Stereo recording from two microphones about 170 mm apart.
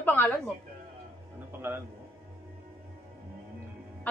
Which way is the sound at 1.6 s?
10° right (ahead or behind).